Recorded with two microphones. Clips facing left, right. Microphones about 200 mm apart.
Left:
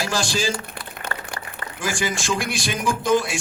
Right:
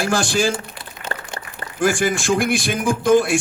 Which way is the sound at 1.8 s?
55° right (ahead or behind).